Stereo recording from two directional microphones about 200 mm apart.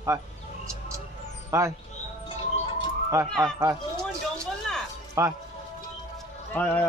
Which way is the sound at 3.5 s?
15° right (ahead or behind).